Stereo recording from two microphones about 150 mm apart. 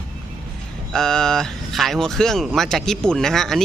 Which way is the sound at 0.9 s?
5° left (ahead or behind).